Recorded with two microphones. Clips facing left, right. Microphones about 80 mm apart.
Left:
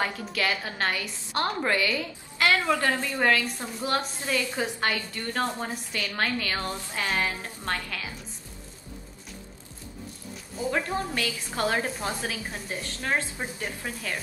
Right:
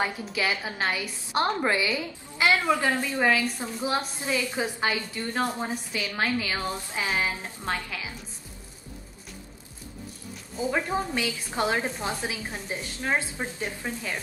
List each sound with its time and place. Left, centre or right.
0.3 s a woman's voice: centre
3.2 s a woman's voice: centre
10.7 s a woman's voice: centre